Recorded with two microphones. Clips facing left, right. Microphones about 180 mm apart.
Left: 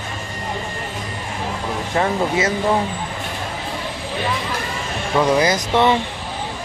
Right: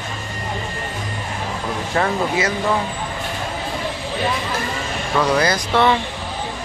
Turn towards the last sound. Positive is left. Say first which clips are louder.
# left 1 dB
turn(degrees=20)  # may be behind; listen again after turning